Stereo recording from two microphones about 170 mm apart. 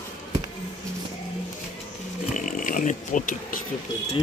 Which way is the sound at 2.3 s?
50° left (ahead or behind).